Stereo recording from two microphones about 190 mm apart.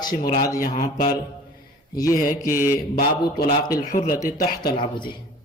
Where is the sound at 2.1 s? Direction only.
50° left (ahead or behind).